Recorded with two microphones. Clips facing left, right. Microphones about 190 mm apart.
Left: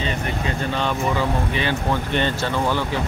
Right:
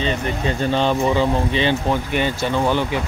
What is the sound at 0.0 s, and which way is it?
Speech, 30° right (ahead or behind).